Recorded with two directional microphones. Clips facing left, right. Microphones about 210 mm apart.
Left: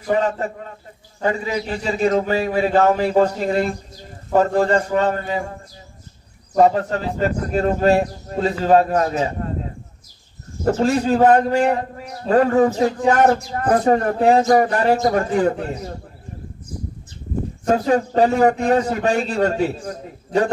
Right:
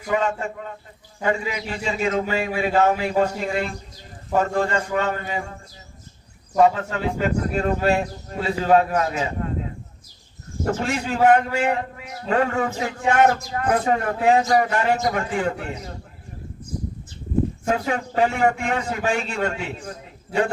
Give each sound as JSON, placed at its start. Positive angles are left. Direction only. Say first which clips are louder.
{"t": 0.0, "sound": "a man's voice", "louder": "left 3 dB", "side_deg": 35}
{"t": 6.6, "sound": "a man's voice", "louder": "left 2 dB", "side_deg": 35}
{"t": 10.6, "sound": "a man's voice", "louder": "left 7 dB", "side_deg": 35}
{"t": 17.6, "sound": "a man's voice", "louder": "left 6 dB", "side_deg": 35}